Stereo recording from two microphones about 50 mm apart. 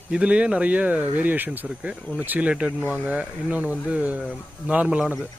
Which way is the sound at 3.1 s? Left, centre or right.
Right.